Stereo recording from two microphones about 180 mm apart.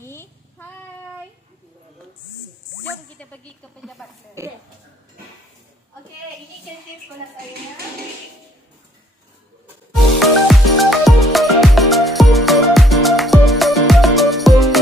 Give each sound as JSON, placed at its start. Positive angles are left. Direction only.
{"t": 0.0, "sound": "child singing", "side_deg": 15}
{"t": 3.2, "sound": "speech", "side_deg": 5}
{"t": 4.4, "sound": "speech", "side_deg": -15}
{"t": 10.1, "sound": "music", "side_deg": 0}